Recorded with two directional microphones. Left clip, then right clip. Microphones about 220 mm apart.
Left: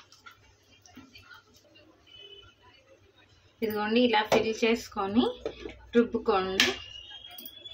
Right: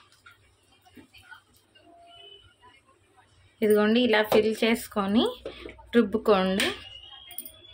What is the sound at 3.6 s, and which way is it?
Speech, 50° right (ahead or behind).